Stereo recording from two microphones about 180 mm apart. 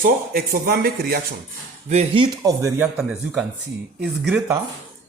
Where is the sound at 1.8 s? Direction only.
40° right (ahead or behind).